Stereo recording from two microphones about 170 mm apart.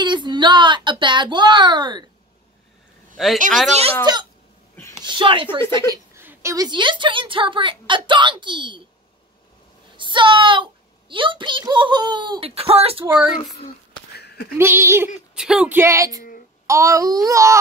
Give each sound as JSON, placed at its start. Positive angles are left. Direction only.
{"t": 0.0, "sound": "a child's voice", "side_deg": -25}
{"t": 3.2, "sound": "a woman's voice", "side_deg": 0}
{"t": 4.0, "sound": "a child's voice", "side_deg": -25}
{"t": 4.7, "sound": "a sound", "side_deg": 15}
{"t": 5.1, "sound": "a child's voice", "side_deg": -30}
{"t": 6.1, "sound": "a child's voice", "side_deg": -15}
{"t": 9.9, "sound": "a child's voice", "side_deg": -30}
{"t": 13.0, "sound": "babbling", "side_deg": -10}
{"t": 14.1, "sound": "a sound", "side_deg": 70}
{"t": 14.6, "sound": "babbling", "side_deg": -15}
{"t": 15.3, "sound": "babbling", "side_deg": -5}